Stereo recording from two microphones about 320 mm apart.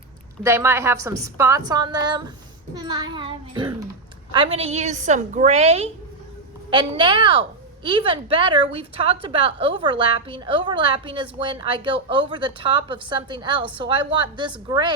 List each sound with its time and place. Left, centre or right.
0.4 s a woman's voice: centre